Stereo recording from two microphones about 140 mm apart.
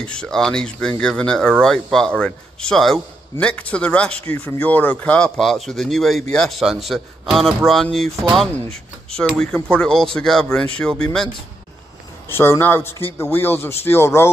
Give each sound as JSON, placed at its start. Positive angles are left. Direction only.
{"t": 0.0, "sound": "speech", "side_deg": 5}
{"t": 9.4, "sound": "speech", "side_deg": 5}
{"t": 12.3, "sound": "speech", "side_deg": 15}